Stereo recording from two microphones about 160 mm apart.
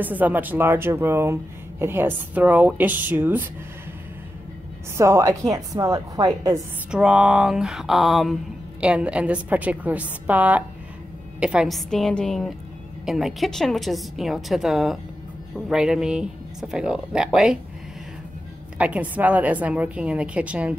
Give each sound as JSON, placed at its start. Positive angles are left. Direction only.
{"t": 0.0, "sound": "speech", "side_deg": -10}
{"t": 4.9, "sound": "a woman's voice", "side_deg": -20}
{"t": 6.9, "sound": "a woman's voice", "side_deg": -5}
{"t": 18.8, "sound": "speech", "side_deg": -10}